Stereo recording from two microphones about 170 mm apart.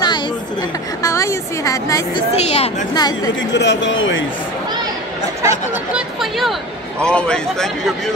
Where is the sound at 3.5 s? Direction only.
90° left.